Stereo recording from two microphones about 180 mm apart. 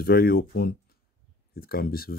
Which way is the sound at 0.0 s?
60° left (ahead or behind).